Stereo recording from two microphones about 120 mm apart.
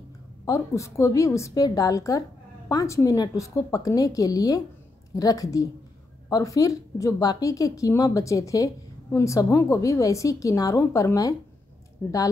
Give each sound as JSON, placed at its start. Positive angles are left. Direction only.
{"t": 0.5, "sound": "a woman's voice", "side_deg": 25}